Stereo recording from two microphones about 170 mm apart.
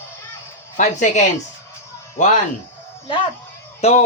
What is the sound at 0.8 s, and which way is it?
A woman's voice, 45° left (ahead or behind).